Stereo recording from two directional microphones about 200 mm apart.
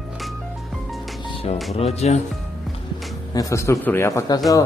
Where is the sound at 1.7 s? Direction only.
30° left (ahead or behind).